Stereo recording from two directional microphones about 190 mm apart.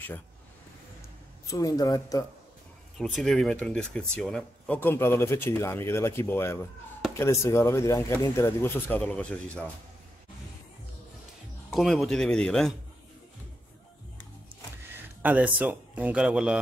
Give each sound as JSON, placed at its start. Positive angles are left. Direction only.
{"t": 1.5, "sound": "speech", "side_deg": 20}
{"t": 3.0, "sound": "speech", "side_deg": 0}
{"t": 11.7, "sound": "speech", "side_deg": 0}
{"t": 15.2, "sound": "speech", "side_deg": -10}